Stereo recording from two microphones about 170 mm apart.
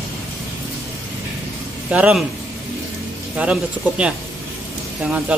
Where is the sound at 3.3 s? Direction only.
5° right (ahead or behind).